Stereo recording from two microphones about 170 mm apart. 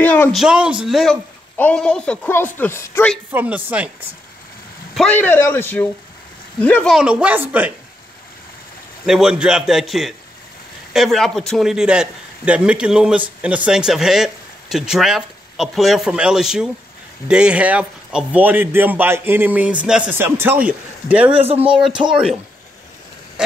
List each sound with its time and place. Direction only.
0.0 s a sound: 10° left (ahead or behind)
0.4 s speech: 5° right (ahead or behind); by 3.1 s 10° left (ahead or behind)
3.3 s a man's voice: 10° right (ahead or behind)
4.9 s speech: 10° left (ahead or behind)
7.0 s a man's voice: 5° right (ahead or behind)
9.0 s a man's voice: 5° right (ahead or behind)
21.3 s speech: 35° right (ahead or behind)
22.1 s speech: 5° right (ahead or behind)